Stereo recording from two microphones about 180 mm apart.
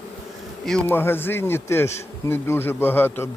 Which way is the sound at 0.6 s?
5° left (ahead or behind).